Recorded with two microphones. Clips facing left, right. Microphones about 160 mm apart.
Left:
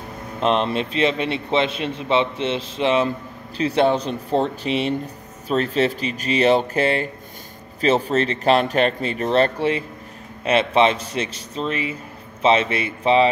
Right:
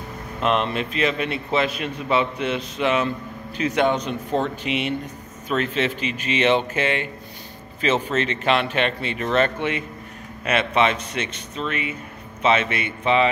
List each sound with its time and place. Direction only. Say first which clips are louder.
0.4 s a man's voice: left 2 dB; 30° left (ahead or behind)